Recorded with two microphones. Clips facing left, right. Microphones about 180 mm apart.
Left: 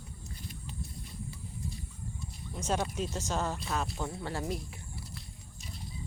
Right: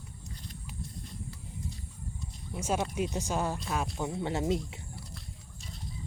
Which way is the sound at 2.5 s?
10° right (ahead or behind).